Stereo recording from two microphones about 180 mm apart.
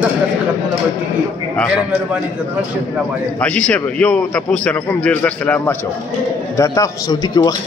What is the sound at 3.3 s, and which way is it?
A man's voice, 5° left (ahead or behind).